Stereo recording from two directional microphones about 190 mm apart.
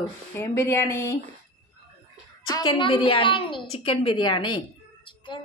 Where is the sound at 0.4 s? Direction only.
10° left (ahead or behind).